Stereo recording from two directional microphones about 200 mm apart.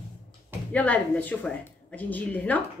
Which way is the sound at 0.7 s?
10° left (ahead or behind).